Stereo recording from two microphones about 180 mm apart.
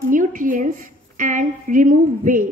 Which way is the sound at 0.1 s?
45° right (ahead or behind).